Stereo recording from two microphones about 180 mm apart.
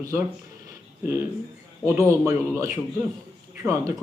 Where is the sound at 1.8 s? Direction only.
15° right (ahead or behind).